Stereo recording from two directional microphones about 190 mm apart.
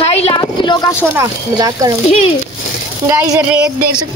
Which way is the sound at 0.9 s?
15° right (ahead or behind).